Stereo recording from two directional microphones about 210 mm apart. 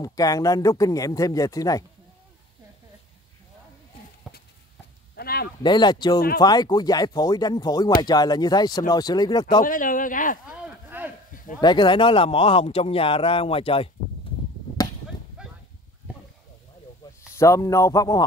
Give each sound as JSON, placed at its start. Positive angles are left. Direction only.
{"t": 0.0, "sound": "speech", "side_deg": 15}
{"t": 4.3, "sound": "horse", "side_deg": 0}
{"t": 5.1, "sound": "a sound", "side_deg": 45}
{"t": 5.6, "sound": "a man's voice", "side_deg": 20}
{"t": 9.6, "sound": "speech", "side_deg": 40}
{"t": 10.5, "sound": "a sound", "side_deg": -10}
{"t": 11.6, "sound": "a man's voice", "side_deg": 20}
{"t": 15.4, "sound": "a sound", "side_deg": -5}
{"t": 17.4, "sound": "speech", "side_deg": 15}